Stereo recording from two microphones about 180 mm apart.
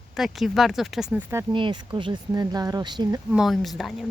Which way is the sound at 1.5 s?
25° right (ahead or behind).